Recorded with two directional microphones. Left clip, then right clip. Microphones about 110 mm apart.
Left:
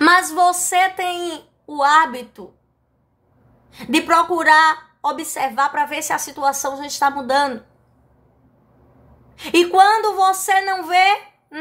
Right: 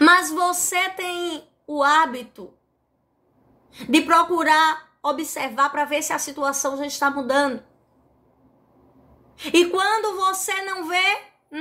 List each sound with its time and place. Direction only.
0.0 s a woman's voice: 30° left (ahead or behind)
3.7 s a woman's voice: 30° left (ahead or behind)
9.3 s a woman's voice: 30° left (ahead or behind)